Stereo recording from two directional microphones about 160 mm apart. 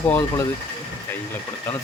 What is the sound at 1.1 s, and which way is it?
Engine, 15° left (ahead or behind).